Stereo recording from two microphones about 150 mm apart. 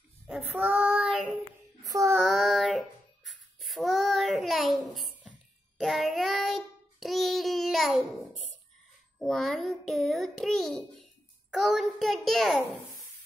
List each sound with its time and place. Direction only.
0.3 s child singing: 10° right (ahead or behind)
1.8 s child singing: 20° right (ahead or behind)
2.1 s child singing: centre (ahead or behind)
3.3 s a sound: centre (ahead or behind)
5.8 s child singing: centre (ahead or behind)
9.2 s a sound: centre (ahead or behind)